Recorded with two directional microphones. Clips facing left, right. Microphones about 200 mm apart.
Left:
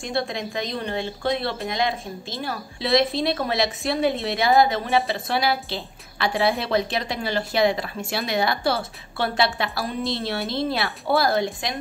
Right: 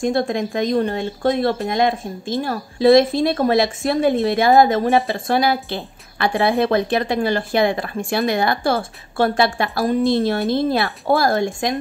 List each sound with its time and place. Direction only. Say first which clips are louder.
0.0 s speech: right 7 dB; 50° right (ahead or behind)